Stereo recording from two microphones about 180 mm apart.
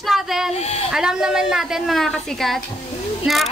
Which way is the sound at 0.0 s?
Centre (ahead or behind).